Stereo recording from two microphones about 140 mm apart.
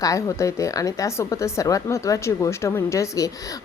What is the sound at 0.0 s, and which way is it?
A woman's voice, 25° left (ahead or behind).